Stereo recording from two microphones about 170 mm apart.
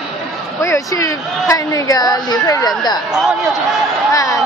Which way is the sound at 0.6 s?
20° left (ahead or behind).